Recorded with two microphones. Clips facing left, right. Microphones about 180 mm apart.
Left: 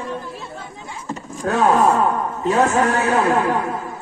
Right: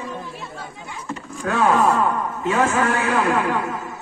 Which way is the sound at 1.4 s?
40° left (ahead or behind).